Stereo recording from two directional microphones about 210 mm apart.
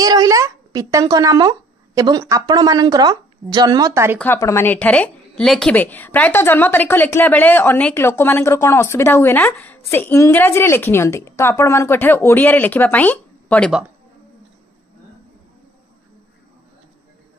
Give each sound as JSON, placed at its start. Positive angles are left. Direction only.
{"t": 0.0, "sound": "speech", "side_deg": -15}
{"t": 4.2, "sound": "a woman's voice", "side_deg": 10}